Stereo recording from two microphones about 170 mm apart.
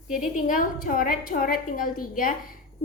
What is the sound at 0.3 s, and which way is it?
A woman's voice, 50° left (ahead or behind).